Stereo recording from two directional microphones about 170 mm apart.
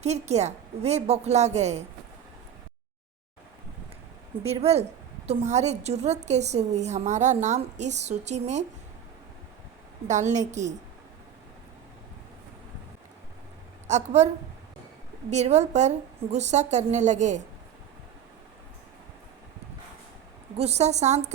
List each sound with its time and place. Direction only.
0.0 s a woman's voice: 40° right (ahead or behind)
4.4 s a woman's voice: 40° right (ahead or behind)
10.1 s a woman's voice: 45° right (ahead or behind)
13.8 s a woman's voice: 40° right (ahead or behind)
15.3 s a woman's voice: 40° right (ahead or behind)
20.6 s a woman's voice: 40° right (ahead or behind)